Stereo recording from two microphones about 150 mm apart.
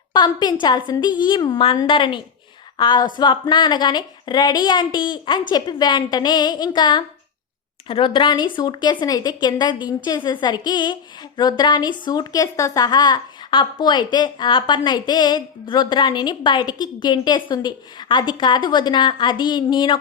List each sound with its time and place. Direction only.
0.1 s a woman's voice: 30° left (ahead or behind)